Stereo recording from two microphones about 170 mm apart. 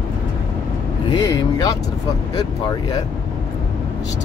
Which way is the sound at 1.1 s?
25° left (ahead or behind).